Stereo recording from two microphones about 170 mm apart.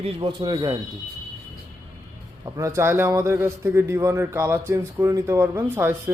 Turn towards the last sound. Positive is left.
turn(degrees=-15)  # may be behind; listen again after turning